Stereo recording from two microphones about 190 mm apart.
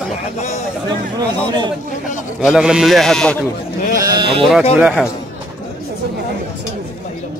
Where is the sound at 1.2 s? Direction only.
25° right (ahead or behind).